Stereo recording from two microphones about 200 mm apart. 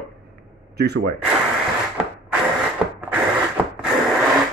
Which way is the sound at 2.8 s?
Centre (ahead or behind).